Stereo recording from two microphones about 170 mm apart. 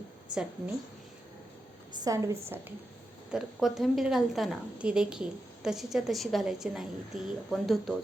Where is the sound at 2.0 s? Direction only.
20° right (ahead or behind).